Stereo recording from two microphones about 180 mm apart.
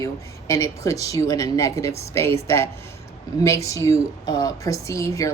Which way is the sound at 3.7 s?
15° left (ahead or behind).